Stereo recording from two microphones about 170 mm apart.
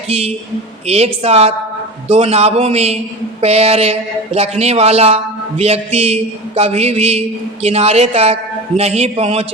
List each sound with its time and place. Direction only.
0.1 s a woman's voice: 35° right (ahead or behind)